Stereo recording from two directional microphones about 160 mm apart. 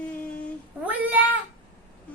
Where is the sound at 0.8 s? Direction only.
10° right (ahead or behind).